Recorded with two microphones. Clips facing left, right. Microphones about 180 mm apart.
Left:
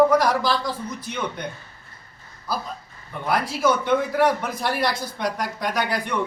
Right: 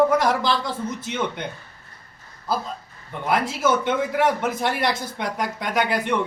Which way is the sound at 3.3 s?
20° right (ahead or behind).